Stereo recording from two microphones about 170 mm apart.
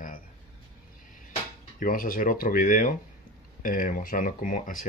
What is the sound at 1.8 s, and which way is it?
Speech, 55° left (ahead or behind).